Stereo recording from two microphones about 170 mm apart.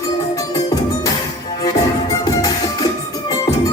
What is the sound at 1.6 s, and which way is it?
Music, 20° left (ahead or behind).